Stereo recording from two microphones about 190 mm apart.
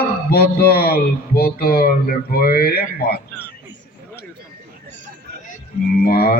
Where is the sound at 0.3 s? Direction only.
55° left (ahead or behind).